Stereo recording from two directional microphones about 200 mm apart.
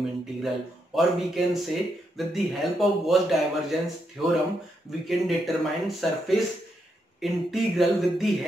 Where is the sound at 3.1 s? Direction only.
Centre (ahead or behind).